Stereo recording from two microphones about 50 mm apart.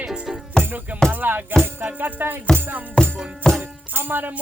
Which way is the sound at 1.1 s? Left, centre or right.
Right.